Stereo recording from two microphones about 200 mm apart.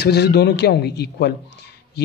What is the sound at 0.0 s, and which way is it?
A man's voice, 55° left (ahead or behind).